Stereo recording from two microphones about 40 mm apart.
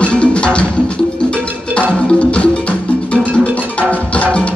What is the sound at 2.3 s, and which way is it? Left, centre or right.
Music, left.